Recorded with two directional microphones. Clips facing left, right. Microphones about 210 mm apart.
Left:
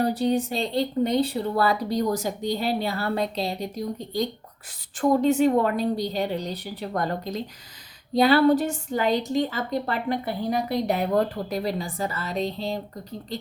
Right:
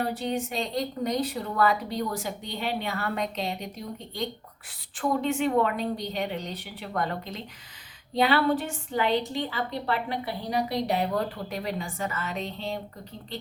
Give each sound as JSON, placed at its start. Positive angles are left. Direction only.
{"t": 0.0, "sound": "a woman's voice", "side_deg": 40}